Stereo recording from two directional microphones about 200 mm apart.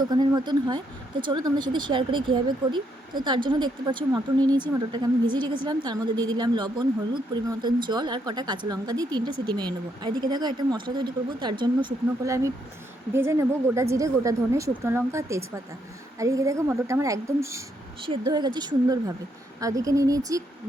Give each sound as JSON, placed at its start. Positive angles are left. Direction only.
{"t": 0.0, "sound": "speech", "side_deg": -20}